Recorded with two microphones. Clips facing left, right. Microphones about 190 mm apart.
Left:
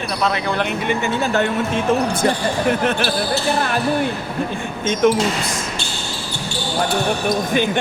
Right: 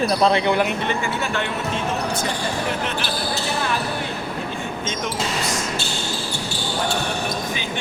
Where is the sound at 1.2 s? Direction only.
40° left (ahead or behind).